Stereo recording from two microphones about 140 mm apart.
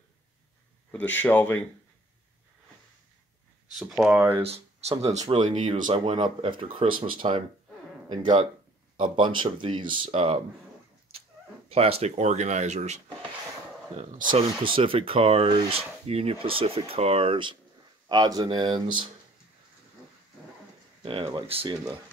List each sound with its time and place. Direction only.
0.9 s speech: 10° left (ahead or behind)
3.7 s speech: 5° right (ahead or behind)
4.4 s speech: 45° right (ahead or behind)
5.9 s speech: 35° right (ahead or behind)
11.7 s speech: 45° right (ahead or behind)
14.3 s speech: 35° right (ahead or behind)
21.0 s speech: 40° right (ahead or behind)